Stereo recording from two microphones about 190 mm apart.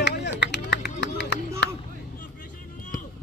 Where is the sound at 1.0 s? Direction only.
65° left (ahead or behind).